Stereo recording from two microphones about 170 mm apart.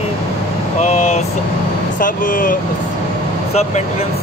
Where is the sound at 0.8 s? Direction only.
40° left (ahead or behind).